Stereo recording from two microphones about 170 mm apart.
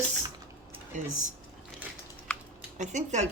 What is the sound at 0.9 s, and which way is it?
Speech, 45° right (ahead or behind).